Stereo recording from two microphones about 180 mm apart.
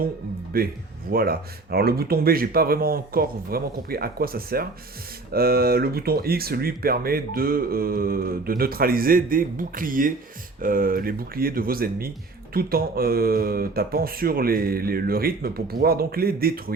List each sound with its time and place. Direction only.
0.5 s speech: 55° right (ahead or behind)